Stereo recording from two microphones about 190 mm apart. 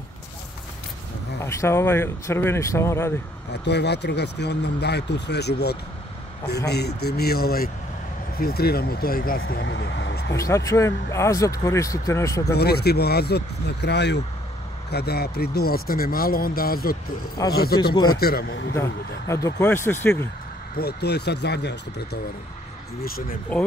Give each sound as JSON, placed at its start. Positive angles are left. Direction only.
{"t": 1.4, "sound": "speech", "side_deg": 15}
{"t": 3.6, "sound": "speech", "side_deg": 60}
{"t": 9.5, "sound": "speech", "side_deg": 65}
{"t": 10.3, "sound": "speech", "side_deg": 15}
{"t": 12.5, "sound": "speech", "side_deg": 55}
{"t": 17.9, "sound": "a man's voice", "side_deg": 20}
{"t": 18.2, "sound": "speech", "side_deg": 55}
{"t": 18.8, "sound": "speech", "side_deg": 15}
{"t": 20.7, "sound": "speech", "side_deg": 55}
{"t": 23.0, "sound": "speech", "side_deg": 50}